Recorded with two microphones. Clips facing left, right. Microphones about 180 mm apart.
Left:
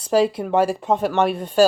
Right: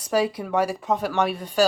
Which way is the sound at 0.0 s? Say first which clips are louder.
Left 5 dB; 30° left (ahead or behind).